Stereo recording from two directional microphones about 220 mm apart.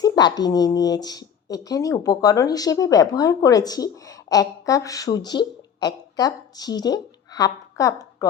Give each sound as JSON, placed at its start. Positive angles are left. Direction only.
{"t": 0.0, "sound": "speech", "side_deg": 20}